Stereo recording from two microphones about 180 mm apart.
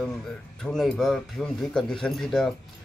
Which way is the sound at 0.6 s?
5° left (ahead or behind).